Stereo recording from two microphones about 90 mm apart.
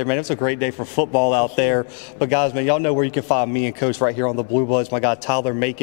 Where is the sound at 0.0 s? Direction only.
15° left (ahead or behind).